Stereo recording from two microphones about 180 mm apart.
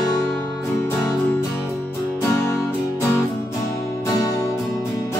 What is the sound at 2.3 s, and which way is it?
Music, 15° left (ahead or behind).